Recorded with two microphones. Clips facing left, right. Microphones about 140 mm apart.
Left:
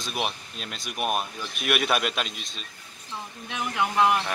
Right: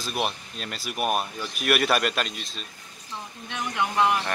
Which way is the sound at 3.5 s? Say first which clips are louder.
Left 1 dB; centre (ahead or behind).